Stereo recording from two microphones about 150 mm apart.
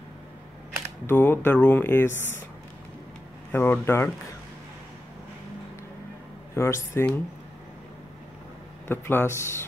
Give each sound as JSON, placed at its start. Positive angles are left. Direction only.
{"t": 1.0, "sound": "speech", "side_deg": 15}
{"t": 3.5, "sound": "speech", "side_deg": 15}
{"t": 6.5, "sound": "speech", "side_deg": 20}
{"t": 8.8, "sound": "speech", "side_deg": 15}